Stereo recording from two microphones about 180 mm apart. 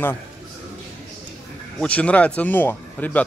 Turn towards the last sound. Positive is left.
turn(degrees=10)  # may be behind; listen again after turning